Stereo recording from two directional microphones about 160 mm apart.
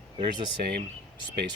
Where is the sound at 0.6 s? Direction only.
80° right.